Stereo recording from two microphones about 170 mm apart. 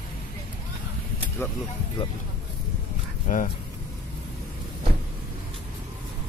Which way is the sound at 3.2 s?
50° left (ahead or behind).